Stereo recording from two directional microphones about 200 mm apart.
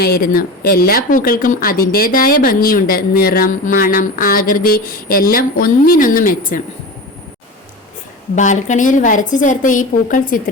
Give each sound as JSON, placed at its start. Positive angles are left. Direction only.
{"t": 0.0, "sound": "speech", "side_deg": 45}
{"t": 8.4, "sound": "a woman's voice", "side_deg": 40}